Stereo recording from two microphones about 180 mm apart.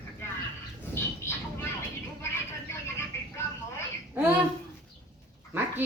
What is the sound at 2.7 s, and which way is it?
Music, 15° left (ahead or behind).